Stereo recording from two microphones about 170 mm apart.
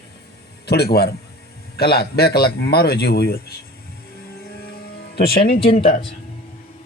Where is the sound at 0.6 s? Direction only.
70° left (ahead or behind).